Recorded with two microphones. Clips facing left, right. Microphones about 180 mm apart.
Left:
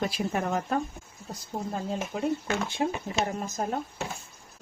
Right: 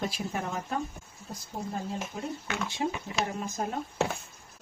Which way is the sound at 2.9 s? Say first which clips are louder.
Left 3 dB; 40° left (ahead or behind).